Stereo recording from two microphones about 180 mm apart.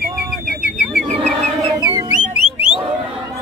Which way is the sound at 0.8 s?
5° right (ahead or behind).